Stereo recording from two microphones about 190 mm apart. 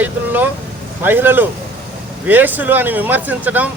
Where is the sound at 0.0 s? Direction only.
10° right (ahead or behind).